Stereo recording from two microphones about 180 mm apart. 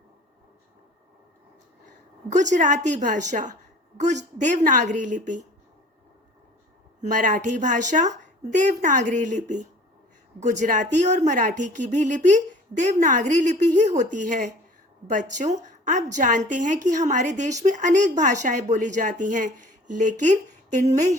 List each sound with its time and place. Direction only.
2.3 s a woman's voice: 45° right (ahead or behind)
7.0 s a woman's voice: 45° right (ahead or behind)